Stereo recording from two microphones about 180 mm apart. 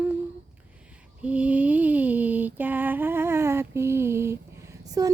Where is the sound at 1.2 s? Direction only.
5° right (ahead or behind).